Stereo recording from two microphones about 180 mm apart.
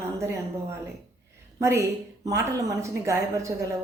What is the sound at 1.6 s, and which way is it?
A woman's voice, 15° right (ahead or behind).